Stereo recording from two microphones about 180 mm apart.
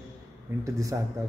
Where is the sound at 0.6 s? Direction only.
20° right (ahead or behind).